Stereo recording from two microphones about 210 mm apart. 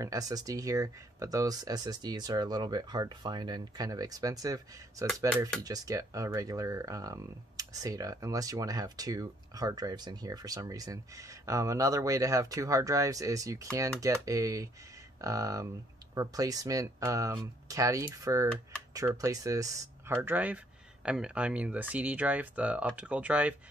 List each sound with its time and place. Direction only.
0.0 s speech: 15° right (ahead or behind)